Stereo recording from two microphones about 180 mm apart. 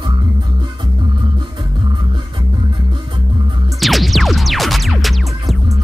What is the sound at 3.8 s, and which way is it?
Music, centre (ahead or behind).